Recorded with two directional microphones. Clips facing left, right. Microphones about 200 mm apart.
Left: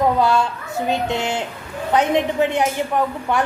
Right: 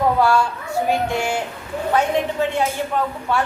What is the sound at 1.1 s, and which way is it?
A woman's voice, 20° left (ahead or behind).